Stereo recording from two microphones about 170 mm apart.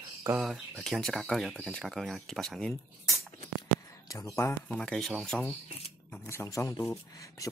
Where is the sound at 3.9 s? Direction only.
20° left (ahead or behind).